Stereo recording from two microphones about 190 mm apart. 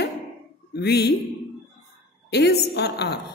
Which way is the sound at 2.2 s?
60° left (ahead or behind).